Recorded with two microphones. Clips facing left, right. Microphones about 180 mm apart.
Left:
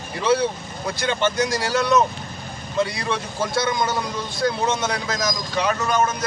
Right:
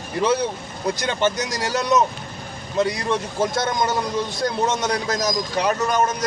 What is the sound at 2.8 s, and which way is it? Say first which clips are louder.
Speech: right 2 dB; 45° right (ahead or behind).